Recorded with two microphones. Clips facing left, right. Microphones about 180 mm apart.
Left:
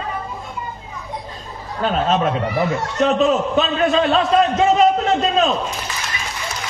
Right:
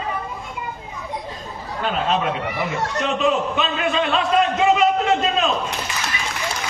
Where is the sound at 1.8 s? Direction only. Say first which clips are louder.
Left 4 dB; 40° left (ahead or behind).